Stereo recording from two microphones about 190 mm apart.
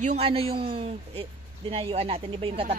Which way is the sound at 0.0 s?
35° right (ahead or behind).